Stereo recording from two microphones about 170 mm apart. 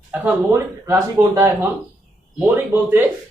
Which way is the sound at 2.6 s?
10° right (ahead or behind).